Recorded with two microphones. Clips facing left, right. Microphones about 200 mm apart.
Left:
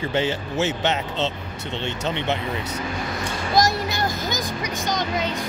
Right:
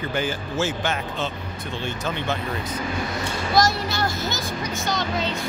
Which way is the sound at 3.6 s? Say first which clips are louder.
Even; 15° left (ahead or behind).